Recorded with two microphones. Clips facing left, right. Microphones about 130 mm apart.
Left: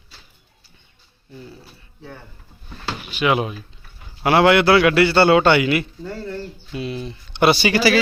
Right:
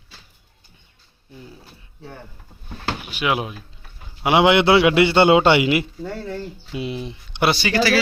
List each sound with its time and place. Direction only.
3.1 s speech: 5° right (ahead or behind)
4.2 s a man's voice: 15° right (ahead or behind)
6.0 s speech: 5° right (ahead or behind)
6.7 s speech: 15° right (ahead or behind)
7.5 s speech: 10° left (ahead or behind)